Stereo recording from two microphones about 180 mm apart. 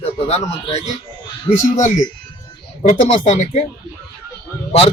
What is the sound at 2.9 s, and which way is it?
Speech, 45° left (ahead or behind).